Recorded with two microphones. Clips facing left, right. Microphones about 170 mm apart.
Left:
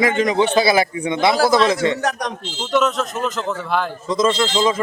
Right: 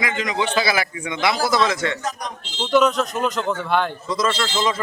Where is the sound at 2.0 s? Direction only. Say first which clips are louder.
Left 6 dB; 70° left (ahead or behind).